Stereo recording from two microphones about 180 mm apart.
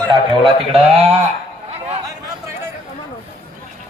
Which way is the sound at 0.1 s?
25° right (ahead or behind).